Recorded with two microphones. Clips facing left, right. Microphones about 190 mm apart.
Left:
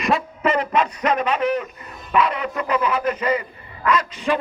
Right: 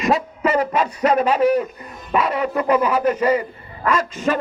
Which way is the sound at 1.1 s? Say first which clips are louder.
Right 5 dB; 35° right (ahead or behind).